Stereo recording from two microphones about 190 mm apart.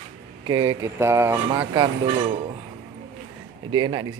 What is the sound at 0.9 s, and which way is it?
Speech, 15° right (ahead or behind).